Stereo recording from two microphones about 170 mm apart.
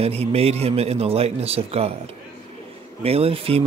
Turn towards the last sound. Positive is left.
turn(degrees=-35)  # may be behind; listen again after turning